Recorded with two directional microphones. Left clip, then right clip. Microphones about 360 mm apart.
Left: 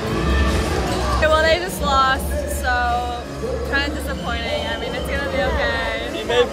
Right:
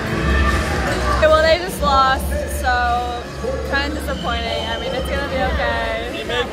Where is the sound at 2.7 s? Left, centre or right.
Centre.